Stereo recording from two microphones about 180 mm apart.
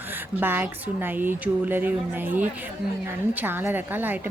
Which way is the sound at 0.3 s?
10° right (ahead or behind).